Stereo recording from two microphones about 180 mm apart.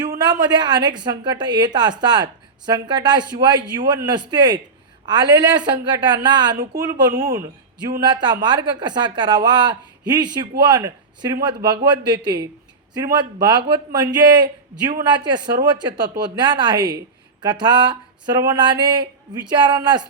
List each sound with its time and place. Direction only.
0.2 s a woman's voice: 25° right (ahead or behind)